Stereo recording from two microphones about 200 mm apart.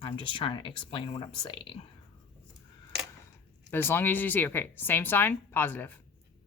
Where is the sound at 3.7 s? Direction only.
10° left (ahead or behind).